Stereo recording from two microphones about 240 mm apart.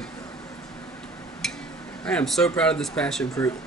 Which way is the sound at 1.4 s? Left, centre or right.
Centre.